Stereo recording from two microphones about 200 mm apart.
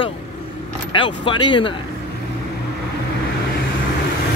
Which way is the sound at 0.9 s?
25° left (ahead or behind).